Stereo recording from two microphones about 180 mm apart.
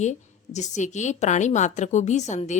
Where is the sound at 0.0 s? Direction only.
40° left (ahead or behind).